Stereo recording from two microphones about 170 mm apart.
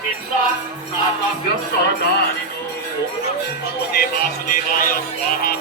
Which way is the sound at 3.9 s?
60° left (ahead or behind).